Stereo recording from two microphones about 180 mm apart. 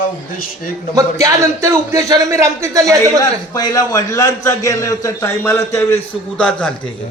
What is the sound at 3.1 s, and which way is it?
A man's voice, 20° left (ahead or behind).